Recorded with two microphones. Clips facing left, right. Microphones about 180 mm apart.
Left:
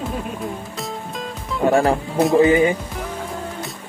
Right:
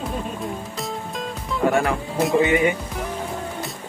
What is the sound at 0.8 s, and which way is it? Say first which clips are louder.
Music: even; centre (ahead or behind).